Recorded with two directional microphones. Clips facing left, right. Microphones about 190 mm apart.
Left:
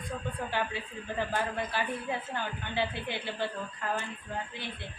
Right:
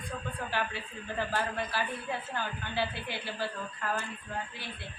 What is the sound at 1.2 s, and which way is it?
A woman's voice, 20° left (ahead or behind).